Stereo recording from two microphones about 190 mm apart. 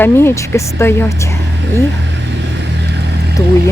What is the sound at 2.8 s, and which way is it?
Vehicle, 65° right (ahead or behind).